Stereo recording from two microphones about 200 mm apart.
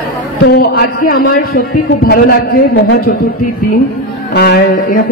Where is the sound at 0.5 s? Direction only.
50° left (ahead or behind).